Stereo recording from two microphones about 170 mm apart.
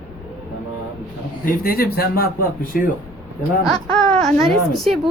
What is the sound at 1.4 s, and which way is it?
Speech, 60° left (ahead or behind).